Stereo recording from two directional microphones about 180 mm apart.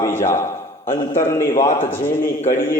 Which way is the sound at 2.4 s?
50° left (ahead or behind).